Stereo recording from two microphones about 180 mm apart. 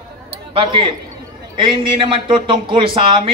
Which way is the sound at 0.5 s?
30° right (ahead or behind).